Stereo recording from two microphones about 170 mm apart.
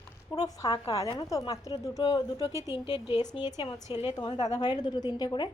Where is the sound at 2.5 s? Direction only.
15° right (ahead or behind).